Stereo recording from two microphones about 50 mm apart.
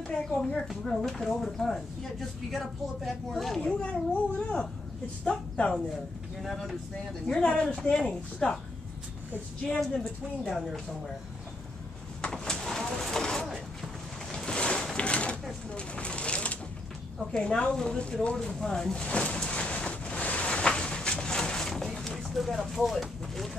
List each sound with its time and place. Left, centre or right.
0.1 s a child's voice: left
0.6 s speech: centre
3.6 s a child's voice: left
6.5 s speech: centre
7.2 s speech: centre
9.7 s speech: centre
12.3 s a sound: centre
17.2 s speech: centre
19.0 s a sound: left; by 23.6 s centre